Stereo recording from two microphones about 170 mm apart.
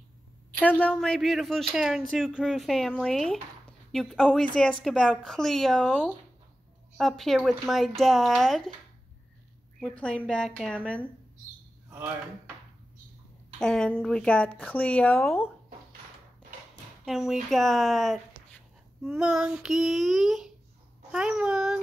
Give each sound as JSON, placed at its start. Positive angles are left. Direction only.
{"t": 0.6, "sound": "speech", "side_deg": 10}
{"t": 9.8, "sound": "speech", "side_deg": 5}
{"t": 13.6, "sound": "speech", "side_deg": 5}
{"t": 17.0, "sound": "speech", "side_deg": 0}